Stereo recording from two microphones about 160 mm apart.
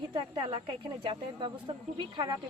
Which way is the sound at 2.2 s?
25° right (ahead or behind).